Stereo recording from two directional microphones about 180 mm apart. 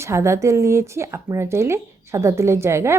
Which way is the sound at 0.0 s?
15° right (ahead or behind).